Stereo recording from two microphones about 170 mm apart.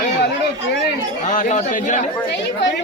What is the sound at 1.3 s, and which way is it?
Speech, 45° left (ahead or behind).